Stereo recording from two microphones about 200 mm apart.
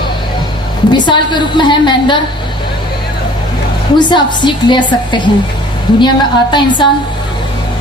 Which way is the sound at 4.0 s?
25° left (ahead or behind).